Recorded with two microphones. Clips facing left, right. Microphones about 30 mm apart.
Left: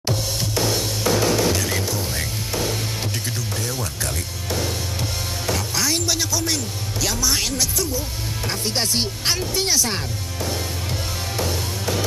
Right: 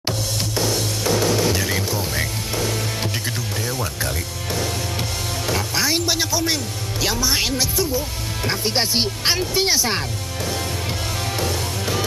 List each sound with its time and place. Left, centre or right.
3.6 s speech: centre
5.5 s speech: centre